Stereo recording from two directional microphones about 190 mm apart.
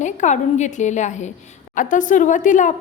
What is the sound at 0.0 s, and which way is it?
A woman's voice, 40° left (ahead or behind).